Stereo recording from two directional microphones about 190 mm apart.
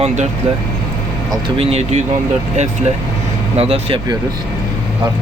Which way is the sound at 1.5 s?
35° right (ahead or behind).